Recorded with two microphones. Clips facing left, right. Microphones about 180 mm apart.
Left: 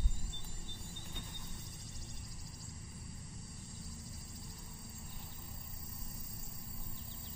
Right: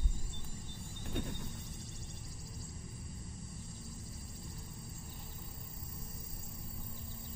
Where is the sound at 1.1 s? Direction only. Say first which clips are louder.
Right 15 dB; 70° right (ahead or behind).